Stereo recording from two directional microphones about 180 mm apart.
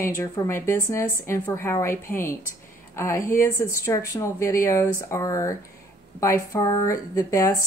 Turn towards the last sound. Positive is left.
turn(degrees=15)  # may be behind; listen again after turning